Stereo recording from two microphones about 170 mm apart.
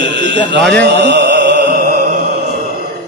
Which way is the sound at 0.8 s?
85° right.